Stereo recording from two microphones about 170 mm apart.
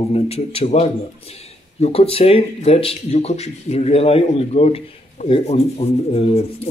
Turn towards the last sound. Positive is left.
turn(degrees=35)  # may be behind; listen again after turning